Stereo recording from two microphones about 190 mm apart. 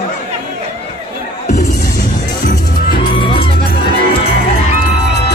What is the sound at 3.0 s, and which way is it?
Music, 25° left (ahead or behind).